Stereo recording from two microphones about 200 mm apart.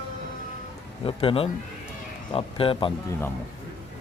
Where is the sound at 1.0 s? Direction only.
25° left (ahead or behind).